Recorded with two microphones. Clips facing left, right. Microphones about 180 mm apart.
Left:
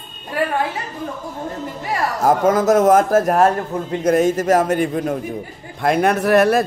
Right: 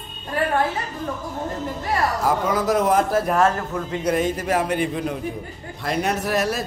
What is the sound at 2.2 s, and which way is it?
A man's voice, 45° left (ahead or behind).